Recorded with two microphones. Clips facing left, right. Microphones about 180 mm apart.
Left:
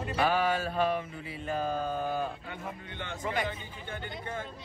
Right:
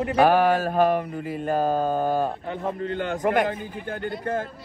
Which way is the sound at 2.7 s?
70° right (ahead or behind).